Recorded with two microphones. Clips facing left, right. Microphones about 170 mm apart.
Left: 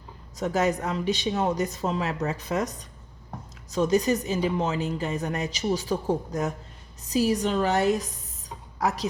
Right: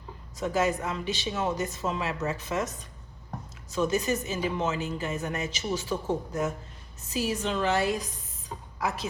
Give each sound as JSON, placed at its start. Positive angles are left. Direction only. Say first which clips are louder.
{"t": 0.3, "sound": "speech", "louder": "left 2 dB", "side_deg": 40}
{"t": 3.7, "sound": "a man's voice", "louder": "left 4 dB", "side_deg": 40}